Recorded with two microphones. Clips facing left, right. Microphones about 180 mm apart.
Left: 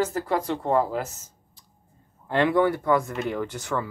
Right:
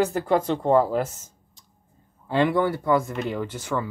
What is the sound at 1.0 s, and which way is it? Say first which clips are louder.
Speech: right 5 dB; 50° right (ahead or behind).